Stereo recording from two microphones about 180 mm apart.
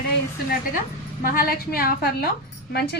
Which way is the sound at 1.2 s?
55° left (ahead or behind).